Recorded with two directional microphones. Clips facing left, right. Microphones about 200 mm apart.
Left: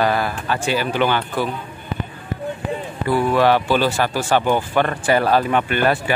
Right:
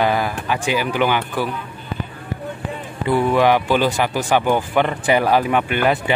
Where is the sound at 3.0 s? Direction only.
20° right (ahead or behind).